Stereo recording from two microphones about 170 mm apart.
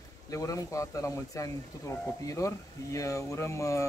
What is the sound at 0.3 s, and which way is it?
Speech, 20° left (ahead or behind).